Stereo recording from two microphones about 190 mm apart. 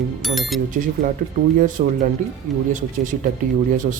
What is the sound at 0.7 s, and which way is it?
Speech, 45° right (ahead or behind).